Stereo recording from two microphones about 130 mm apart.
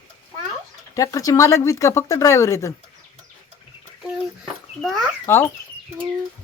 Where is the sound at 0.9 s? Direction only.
25° left (ahead or behind).